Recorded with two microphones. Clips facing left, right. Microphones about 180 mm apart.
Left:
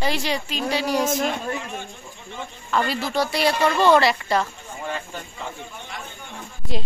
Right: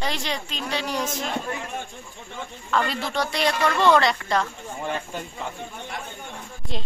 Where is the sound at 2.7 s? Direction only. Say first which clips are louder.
Left 2 dB; 5° left (ahead or behind).